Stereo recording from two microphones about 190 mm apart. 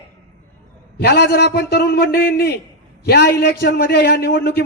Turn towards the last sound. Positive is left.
turn(degrees=60)  # may be behind; listen again after turning